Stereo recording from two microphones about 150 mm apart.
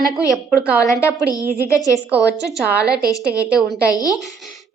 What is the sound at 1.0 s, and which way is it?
Speech, 25° left (ahead or behind).